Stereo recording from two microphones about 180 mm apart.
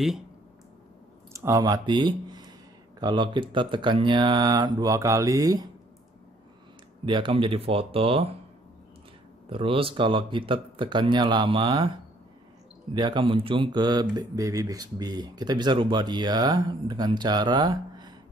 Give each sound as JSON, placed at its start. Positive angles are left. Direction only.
{"t": 1.3, "sound": "speech", "side_deg": -15}
{"t": 7.1, "sound": "speech", "side_deg": -25}
{"t": 9.5, "sound": "speech", "side_deg": -30}
{"t": 12.9, "sound": "speech", "side_deg": -25}